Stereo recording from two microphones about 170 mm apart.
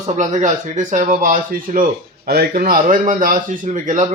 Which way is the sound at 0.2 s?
45° right (ahead or behind).